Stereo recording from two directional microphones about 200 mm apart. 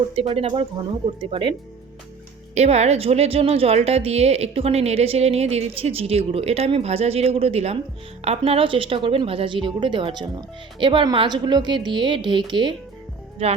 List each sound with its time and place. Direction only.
0.2 s a woman's voice: 30° right (ahead or behind)
2.6 s a woman's voice: 35° right (ahead or behind)